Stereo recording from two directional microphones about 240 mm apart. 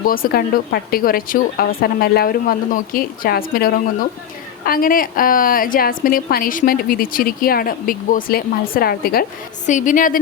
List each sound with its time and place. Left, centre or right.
0.0 s a woman's voice: left